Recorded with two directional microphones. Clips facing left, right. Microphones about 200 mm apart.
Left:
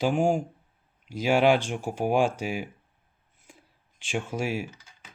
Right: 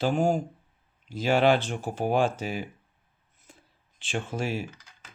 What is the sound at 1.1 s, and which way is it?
Speech, 10° left (ahead or behind).